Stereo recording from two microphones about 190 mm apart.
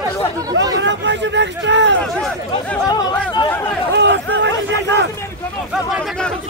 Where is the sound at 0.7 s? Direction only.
70° right (ahead or behind).